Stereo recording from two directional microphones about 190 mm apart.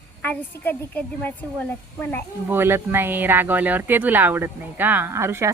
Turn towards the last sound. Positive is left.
turn(degrees=-15)  # may be behind; listen again after turning